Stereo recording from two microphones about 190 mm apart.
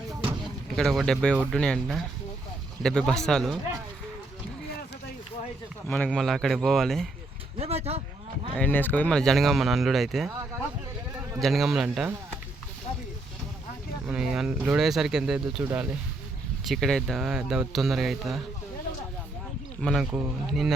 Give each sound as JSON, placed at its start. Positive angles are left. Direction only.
{"t": 0.1, "sound": "a sound", "side_deg": -25}
{"t": 0.4, "sound": "speech", "side_deg": 0}
{"t": 6.1, "sound": "speech", "side_deg": 0}
{"t": 7.6, "sound": "speech", "side_deg": -35}
{"t": 8.5, "sound": "speech", "side_deg": 10}
{"t": 11.3, "sound": "speech", "side_deg": 0}
{"t": 14.1, "sound": "speech", "side_deg": -5}
{"t": 19.8, "sound": "speech", "side_deg": 0}